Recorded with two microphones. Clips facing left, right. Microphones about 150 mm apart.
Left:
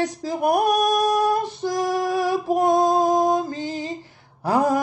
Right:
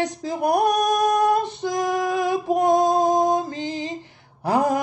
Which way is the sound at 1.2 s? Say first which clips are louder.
Right 1 dB; 20° right (ahead or behind).